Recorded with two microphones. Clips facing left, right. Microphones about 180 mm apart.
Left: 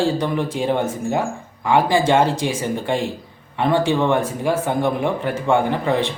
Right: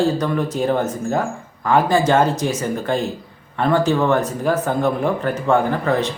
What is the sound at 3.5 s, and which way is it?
A man's voice, 15° left (ahead or behind).